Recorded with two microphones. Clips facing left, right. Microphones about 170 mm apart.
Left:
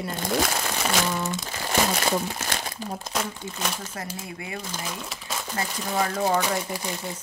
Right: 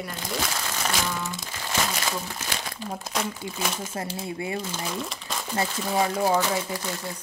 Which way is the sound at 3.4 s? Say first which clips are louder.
Right 1 dB; 10° right (ahead or behind).